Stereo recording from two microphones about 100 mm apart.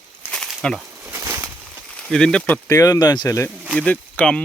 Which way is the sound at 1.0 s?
25° right (ahead or behind).